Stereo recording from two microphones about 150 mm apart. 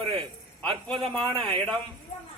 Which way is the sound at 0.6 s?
5° left (ahead or behind).